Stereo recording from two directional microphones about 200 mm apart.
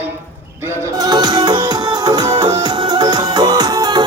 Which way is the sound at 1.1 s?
20° right (ahead or behind).